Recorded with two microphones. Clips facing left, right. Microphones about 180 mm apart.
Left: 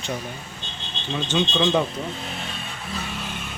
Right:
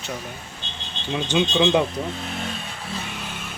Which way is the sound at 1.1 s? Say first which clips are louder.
Right 2 dB; 10° right (ahead or behind).